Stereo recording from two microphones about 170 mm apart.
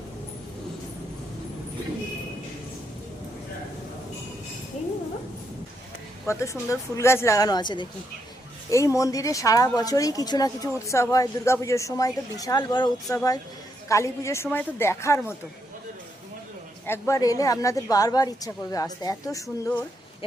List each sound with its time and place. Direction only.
6.2 s a woman's voice: 20° left (ahead or behind)
16.8 s a woman's voice: 15° left (ahead or behind)